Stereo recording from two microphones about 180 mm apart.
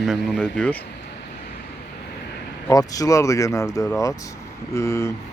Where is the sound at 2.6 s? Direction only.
20° left (ahead or behind).